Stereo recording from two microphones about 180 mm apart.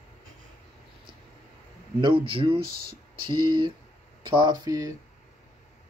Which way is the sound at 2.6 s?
55° right (ahead or behind).